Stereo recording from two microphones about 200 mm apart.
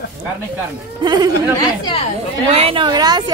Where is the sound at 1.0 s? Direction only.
20° right (ahead or behind).